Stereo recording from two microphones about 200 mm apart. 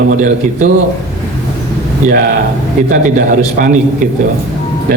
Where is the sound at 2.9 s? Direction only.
40° right (ahead or behind).